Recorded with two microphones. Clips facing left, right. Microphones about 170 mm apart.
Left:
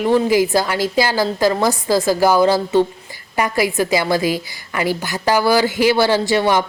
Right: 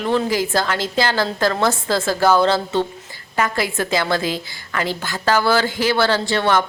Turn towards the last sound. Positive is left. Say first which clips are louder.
# left 3 dB
turn(degrees=15)  # may be behind; listen again after turning